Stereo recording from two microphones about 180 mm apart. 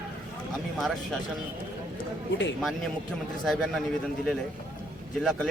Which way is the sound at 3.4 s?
Centre (ahead or behind).